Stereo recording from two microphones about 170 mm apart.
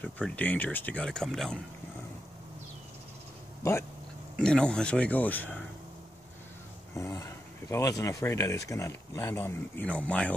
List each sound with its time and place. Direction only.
0.0 s speech: 10° left (ahead or behind)
4.4 s speech: 5° left (ahead or behind)
7.0 s speech: 15° left (ahead or behind)